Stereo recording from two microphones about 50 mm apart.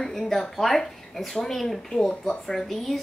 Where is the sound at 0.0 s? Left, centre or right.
Centre.